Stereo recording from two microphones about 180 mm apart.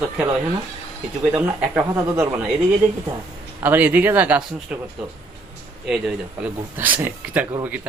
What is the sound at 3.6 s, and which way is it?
Speech, 10° right (ahead or behind).